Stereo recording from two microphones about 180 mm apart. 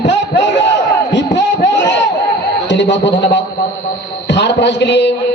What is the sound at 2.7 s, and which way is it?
Speech, 80° left.